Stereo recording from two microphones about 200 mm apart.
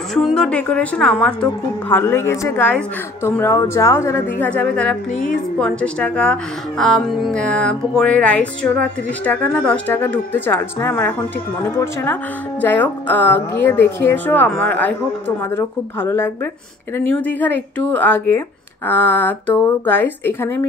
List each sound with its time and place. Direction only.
0.1 s a woman's voice: centre (ahead or behind)
5.6 s music: 5° left (ahead or behind)
9.2 s a woman's voice: 10° left (ahead or behind)
17.3 s a woman's voice: 10° left (ahead or behind)